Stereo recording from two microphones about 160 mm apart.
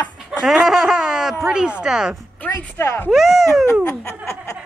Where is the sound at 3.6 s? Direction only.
15° left (ahead or behind).